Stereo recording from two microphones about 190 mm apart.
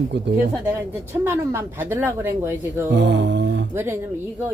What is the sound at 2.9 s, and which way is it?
Mantra, 70° right (ahead or behind).